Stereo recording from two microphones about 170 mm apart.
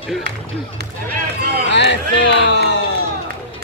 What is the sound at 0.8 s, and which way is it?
Run, 60° right (ahead or behind).